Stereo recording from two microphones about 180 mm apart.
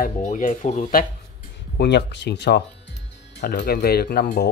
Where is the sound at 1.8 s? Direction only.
70° left (ahead or behind).